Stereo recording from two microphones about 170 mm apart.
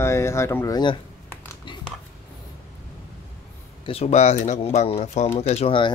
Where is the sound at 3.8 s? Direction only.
35° left (ahead or behind).